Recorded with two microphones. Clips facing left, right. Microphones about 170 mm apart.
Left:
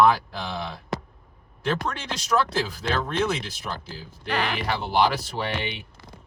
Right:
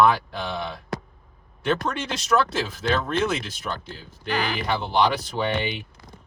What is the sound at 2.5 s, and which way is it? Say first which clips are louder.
Speech: right 2 dB; centre (ahead or behind).